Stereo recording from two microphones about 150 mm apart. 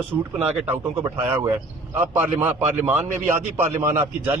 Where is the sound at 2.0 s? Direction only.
10° right (ahead or behind).